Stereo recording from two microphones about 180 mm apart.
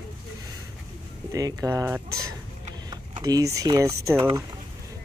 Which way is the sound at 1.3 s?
15° right (ahead or behind).